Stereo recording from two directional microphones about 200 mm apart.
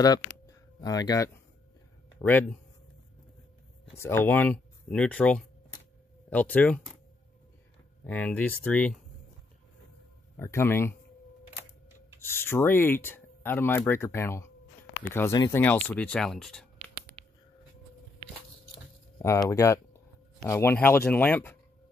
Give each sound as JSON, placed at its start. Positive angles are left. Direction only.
{"t": 0.5, "sound": "music", "side_deg": 20}
{"t": 2.1, "sound": "speech", "side_deg": 10}
{"t": 4.0, "sound": "speech", "side_deg": 10}
{"t": 8.0, "sound": "speech", "side_deg": 10}
{"t": 10.3, "sound": "speech", "side_deg": 10}
{"t": 12.2, "sound": "speech", "side_deg": 10}
{"t": 17.2, "sound": "a sound", "side_deg": -30}
{"t": 19.1, "sound": "speech", "side_deg": 15}